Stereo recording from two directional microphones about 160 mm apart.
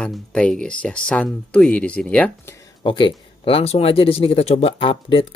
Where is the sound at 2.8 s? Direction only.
30° left (ahead or behind).